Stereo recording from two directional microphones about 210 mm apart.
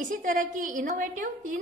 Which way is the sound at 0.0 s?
40° right (ahead or behind).